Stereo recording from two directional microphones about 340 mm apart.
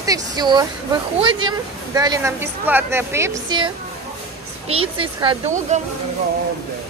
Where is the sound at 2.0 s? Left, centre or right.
Centre.